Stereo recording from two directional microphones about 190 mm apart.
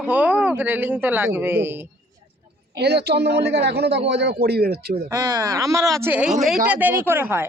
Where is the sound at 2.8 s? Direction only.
60° right (ahead or behind).